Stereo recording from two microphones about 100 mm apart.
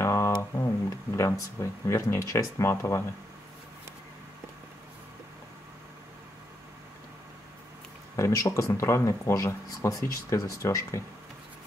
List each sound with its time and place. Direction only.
0.0 s speech: 25° left (ahead or behind)
8.2 s speech: 30° left (ahead or behind)